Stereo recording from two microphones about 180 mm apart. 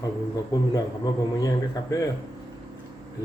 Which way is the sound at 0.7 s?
20° left (ahead or behind).